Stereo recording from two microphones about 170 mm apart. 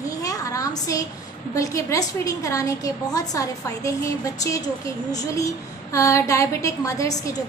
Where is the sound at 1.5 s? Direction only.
20° left (ahead or behind).